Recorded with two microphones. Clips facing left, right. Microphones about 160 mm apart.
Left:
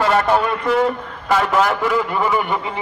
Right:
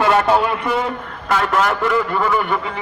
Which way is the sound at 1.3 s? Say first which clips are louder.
Left 1 dB; 5° left (ahead or behind).